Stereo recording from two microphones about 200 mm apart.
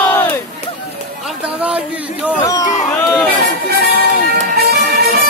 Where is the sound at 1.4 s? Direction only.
5° right (ahead or behind).